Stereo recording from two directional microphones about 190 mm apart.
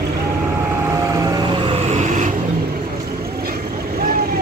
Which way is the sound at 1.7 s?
35° right (ahead or behind).